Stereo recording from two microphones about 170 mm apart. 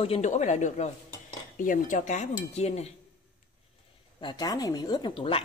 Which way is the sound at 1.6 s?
50° left (ahead or behind).